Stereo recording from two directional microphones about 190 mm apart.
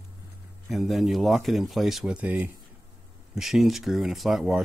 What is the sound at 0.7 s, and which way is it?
Speech, centre (ahead or behind).